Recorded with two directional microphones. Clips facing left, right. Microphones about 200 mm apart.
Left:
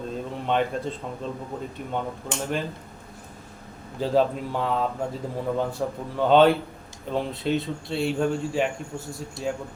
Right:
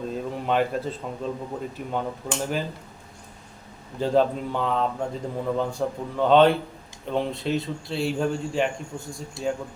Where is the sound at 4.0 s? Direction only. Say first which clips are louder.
Right 1 dB; centre (ahead or behind).